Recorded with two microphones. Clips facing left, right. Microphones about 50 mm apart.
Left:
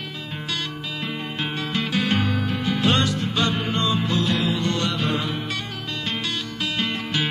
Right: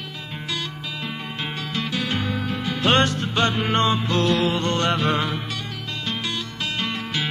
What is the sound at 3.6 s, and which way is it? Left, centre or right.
Music, right.